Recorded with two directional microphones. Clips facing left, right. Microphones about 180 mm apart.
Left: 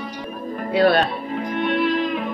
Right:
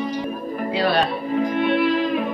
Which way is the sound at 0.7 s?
55° left (ahead or behind).